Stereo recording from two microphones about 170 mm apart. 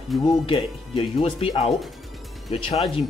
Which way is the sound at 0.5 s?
30° left (ahead or behind).